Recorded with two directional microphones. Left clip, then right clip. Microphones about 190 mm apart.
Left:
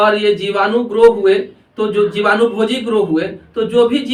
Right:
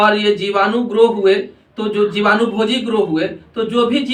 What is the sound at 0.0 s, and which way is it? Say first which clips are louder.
A man's voice: left 1 dB; 20° right (ahead or behind).